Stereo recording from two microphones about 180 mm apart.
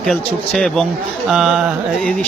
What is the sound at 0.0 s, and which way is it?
Speech, centre (ahead or behind).